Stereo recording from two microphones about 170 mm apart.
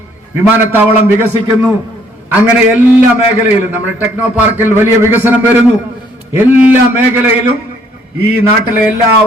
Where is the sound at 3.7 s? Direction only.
10° right (ahead or behind).